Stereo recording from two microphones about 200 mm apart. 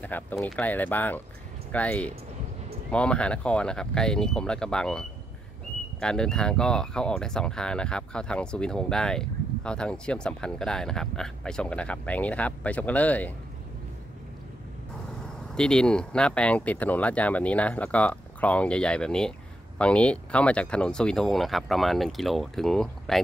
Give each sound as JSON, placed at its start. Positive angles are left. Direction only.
{"t": 0.0, "sound": "speech", "side_deg": 10}
{"t": 15.5, "sound": "speech", "side_deg": 5}